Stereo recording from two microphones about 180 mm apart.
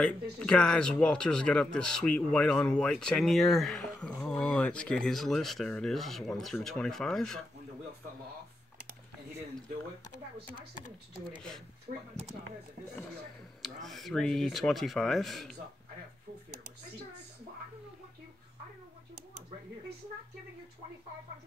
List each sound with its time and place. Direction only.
0.0 s a man's voice: 5° left (ahead or behind)
12.2 s speech: 35° right (ahead or behind)
13.8 s a man's voice: centre (ahead or behind)